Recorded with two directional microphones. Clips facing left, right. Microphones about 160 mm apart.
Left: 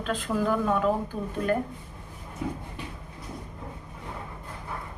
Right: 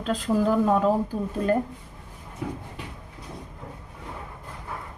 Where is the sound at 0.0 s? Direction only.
35° right (ahead or behind).